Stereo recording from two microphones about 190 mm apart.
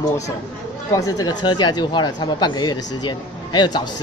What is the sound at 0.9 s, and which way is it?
A man's voice, 20° left (ahead or behind).